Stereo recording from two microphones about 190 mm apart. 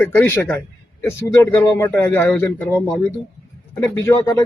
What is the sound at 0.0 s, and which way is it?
Speech, 10° left (ahead or behind).